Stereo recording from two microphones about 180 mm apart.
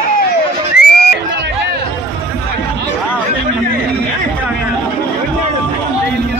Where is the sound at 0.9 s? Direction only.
65° left (ahead or behind).